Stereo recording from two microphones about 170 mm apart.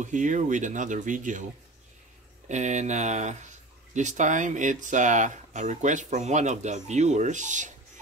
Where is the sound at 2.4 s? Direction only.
45° right (ahead or behind).